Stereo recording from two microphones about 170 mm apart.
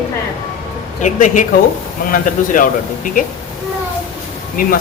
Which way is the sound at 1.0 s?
50° left (ahead or behind).